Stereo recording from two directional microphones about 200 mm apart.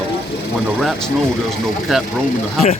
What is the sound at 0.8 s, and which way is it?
Speech, centre (ahead or behind).